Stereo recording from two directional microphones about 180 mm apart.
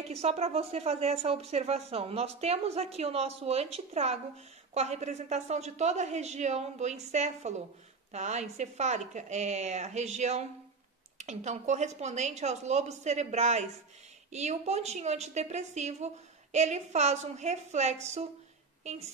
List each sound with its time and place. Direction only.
0.2 s speech: 35° right (ahead or behind)